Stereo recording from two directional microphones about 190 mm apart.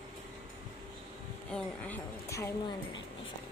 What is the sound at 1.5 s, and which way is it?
A woman's voice, 10° left (ahead or behind).